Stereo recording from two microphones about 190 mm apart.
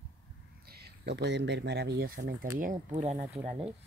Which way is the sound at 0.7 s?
60° right (ahead or behind).